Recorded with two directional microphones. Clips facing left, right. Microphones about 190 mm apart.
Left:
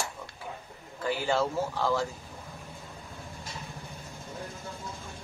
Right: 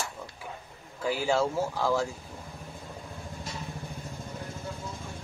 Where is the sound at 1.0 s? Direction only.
10° right (ahead or behind).